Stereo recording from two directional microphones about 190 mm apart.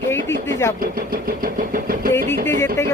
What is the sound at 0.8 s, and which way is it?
Speech, 50° right (ahead or behind).